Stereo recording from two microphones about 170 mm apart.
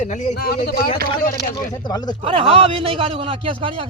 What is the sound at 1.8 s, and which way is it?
Speech, 25° left (ahead or behind).